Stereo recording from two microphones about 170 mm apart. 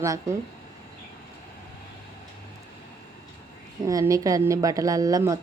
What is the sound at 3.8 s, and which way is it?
Speech, 20° right (ahead or behind).